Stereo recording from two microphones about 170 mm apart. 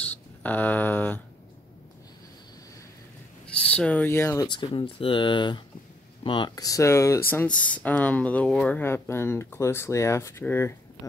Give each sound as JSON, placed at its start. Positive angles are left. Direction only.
{"t": 0.0, "sound": "speech", "side_deg": 10}
{"t": 3.4, "sound": "speech", "side_deg": 5}